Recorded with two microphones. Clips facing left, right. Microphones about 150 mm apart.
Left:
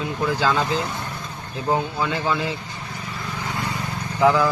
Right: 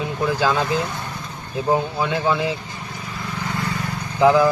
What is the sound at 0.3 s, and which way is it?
Speech, 15° right (ahead or behind).